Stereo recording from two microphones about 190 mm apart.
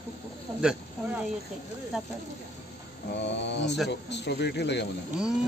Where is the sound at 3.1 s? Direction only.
70° left (ahead or behind).